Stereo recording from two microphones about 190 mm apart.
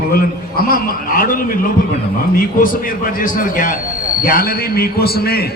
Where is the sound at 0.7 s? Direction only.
50° left (ahead or behind).